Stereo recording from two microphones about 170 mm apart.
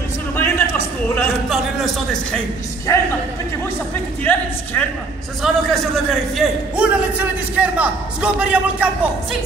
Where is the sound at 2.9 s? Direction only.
15° left (ahead or behind).